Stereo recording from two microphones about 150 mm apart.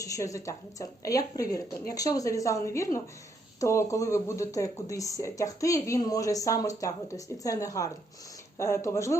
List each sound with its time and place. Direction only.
0.0 s speech: 20° left (ahead or behind)